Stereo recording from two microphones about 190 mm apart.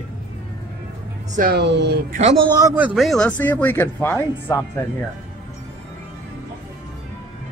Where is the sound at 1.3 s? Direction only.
45° right (ahead or behind).